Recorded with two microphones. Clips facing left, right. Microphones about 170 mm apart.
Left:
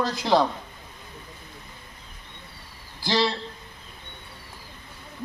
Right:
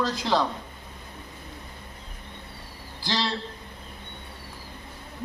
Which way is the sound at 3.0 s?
10° left (ahead or behind).